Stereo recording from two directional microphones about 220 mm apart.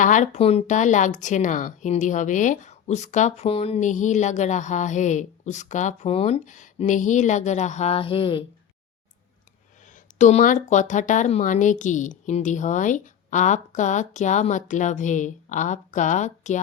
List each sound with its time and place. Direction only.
0.0 s speech: 35° left (ahead or behind)
10.2 s speech: 35° left (ahead or behind)